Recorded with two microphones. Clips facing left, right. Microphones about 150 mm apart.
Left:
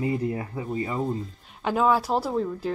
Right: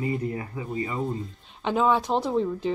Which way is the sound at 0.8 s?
Centre (ahead or behind).